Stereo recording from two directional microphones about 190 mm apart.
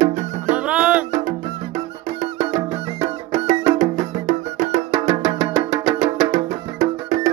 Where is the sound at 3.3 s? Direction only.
40° right (ahead or behind).